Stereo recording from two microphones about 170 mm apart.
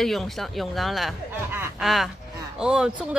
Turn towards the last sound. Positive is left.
turn(degrees=-5)  # may be behind; listen again after turning